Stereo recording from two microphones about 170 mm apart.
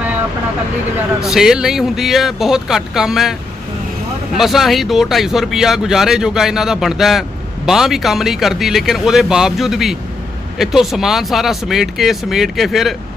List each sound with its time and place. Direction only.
1.2 s speech: 5° right (ahead or behind)
4.4 s speech: centre (ahead or behind)